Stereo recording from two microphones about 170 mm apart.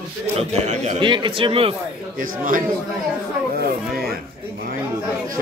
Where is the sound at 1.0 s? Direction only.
30° right (ahead or behind).